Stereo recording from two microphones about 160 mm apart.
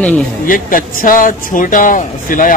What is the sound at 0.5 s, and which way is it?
Speech, 60° left (ahead or behind).